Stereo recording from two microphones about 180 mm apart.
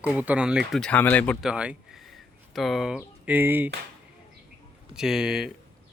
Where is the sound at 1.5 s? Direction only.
5° right (ahead or behind).